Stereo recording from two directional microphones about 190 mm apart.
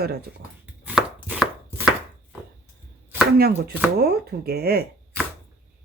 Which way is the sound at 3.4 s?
55° right (ahead or behind).